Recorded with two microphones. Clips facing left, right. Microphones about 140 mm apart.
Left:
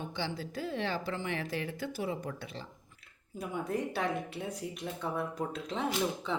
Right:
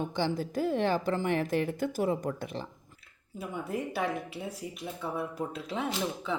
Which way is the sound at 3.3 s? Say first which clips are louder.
Even; 5° right (ahead or behind).